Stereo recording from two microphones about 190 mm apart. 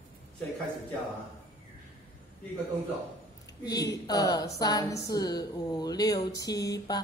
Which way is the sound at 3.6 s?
20° left (ahead or behind).